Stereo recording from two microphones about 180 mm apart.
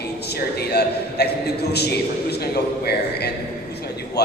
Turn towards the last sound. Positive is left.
turn(degrees=65)  # may be behind; listen again after turning